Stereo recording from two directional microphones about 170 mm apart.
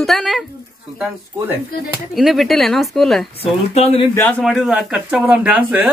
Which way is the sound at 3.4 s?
35° left (ahead or behind).